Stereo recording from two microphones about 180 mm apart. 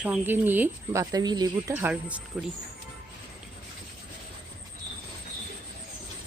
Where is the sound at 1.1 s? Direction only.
25° right (ahead or behind).